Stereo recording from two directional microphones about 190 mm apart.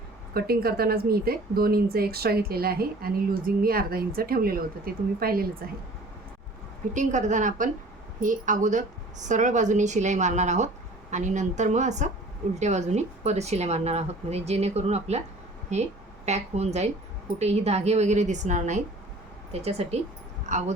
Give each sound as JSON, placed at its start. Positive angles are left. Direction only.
{"t": 0.3, "sound": "speech", "side_deg": -55}
{"t": 6.9, "sound": "a woman's voice", "side_deg": -40}